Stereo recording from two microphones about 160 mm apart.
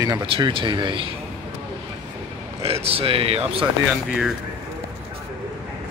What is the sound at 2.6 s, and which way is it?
Speech, 35° right (ahead or behind).